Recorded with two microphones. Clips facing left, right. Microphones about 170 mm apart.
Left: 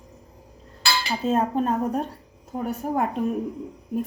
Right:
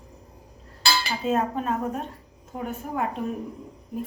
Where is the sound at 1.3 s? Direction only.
35° left (ahead or behind).